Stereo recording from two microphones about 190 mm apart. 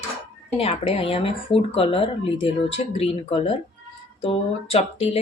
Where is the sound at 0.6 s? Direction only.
30° left (ahead or behind).